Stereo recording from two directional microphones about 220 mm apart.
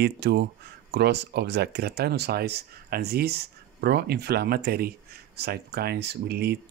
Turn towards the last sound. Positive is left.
turn(degrees=-50)  # may be behind; listen again after turning